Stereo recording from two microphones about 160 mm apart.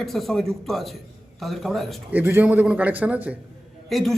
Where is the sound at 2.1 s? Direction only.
15° right (ahead or behind).